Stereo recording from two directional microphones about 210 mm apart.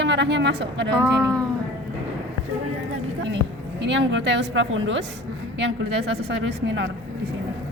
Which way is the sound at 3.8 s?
60° right (ahead or behind).